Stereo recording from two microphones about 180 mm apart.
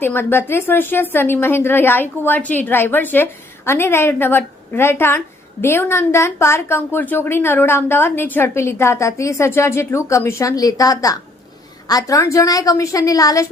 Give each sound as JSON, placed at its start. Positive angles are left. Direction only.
{"t": 0.0, "sound": "a woman's voice", "side_deg": 10}